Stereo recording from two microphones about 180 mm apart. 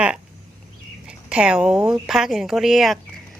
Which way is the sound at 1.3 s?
5° right (ahead or behind).